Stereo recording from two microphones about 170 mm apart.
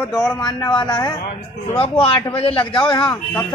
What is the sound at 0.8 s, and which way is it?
Speech, 25° left (ahead or behind).